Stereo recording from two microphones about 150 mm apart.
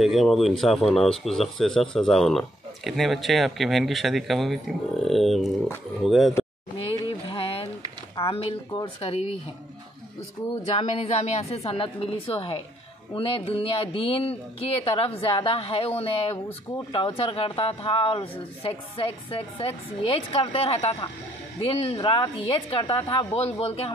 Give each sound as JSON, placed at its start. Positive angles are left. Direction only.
{"t": 0.0, "sound": "speech", "side_deg": 0}
{"t": 6.8, "sound": "a sound", "side_deg": 35}
{"t": 8.2, "sound": "speech", "side_deg": 40}
{"t": 10.5, "sound": "speech", "side_deg": 45}